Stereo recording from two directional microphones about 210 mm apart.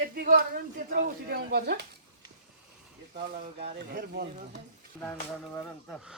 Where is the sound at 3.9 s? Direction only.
50° right (ahead or behind).